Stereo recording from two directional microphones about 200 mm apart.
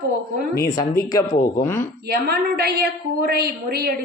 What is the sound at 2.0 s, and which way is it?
A woman's voice, 50° right (ahead or behind).